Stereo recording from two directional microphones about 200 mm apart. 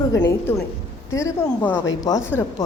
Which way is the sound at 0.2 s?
10° left (ahead or behind).